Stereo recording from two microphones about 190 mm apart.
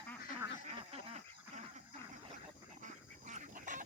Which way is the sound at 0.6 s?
35° right (ahead or behind).